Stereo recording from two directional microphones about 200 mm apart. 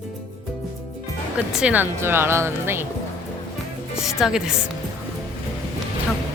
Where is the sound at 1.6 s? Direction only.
10° right (ahead or behind).